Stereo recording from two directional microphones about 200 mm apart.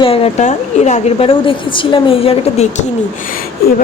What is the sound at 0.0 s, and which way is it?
A woman's voice, 30° left (ahead or behind).